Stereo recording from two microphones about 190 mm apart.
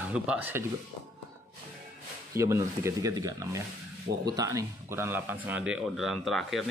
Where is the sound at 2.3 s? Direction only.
15° right (ahead or behind).